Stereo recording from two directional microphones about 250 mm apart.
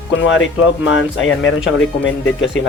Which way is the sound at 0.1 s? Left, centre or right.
Left.